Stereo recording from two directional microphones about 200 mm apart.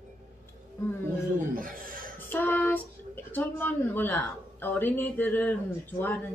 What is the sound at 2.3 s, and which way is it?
A woman's voice, 10° left (ahead or behind).